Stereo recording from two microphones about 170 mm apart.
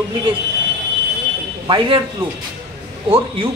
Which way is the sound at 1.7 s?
30° right (ahead or behind).